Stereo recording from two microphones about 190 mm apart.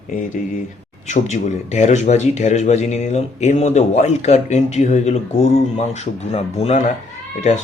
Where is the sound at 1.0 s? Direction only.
40° left (ahead or behind).